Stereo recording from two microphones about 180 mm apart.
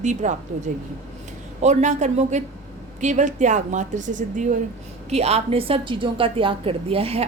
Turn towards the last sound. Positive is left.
turn(degrees=-35)  # may be behind; listen again after turning